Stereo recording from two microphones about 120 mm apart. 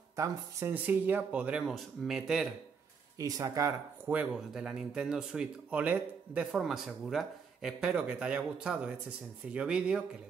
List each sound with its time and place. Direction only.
0.1 s speech: 25° right (ahead or behind); by 2.4 s 5° right (ahead or behind)
3.2 s speech: 30° right (ahead or behind)
4.4 s speech: 5° right (ahead or behind)
6.5 s speech: centre (ahead or behind)